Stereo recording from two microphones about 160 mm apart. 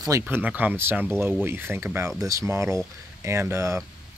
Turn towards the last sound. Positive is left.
turn(degrees=-15)  # may be behind; listen again after turning